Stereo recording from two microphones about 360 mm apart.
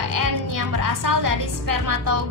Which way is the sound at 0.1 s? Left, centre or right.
Right.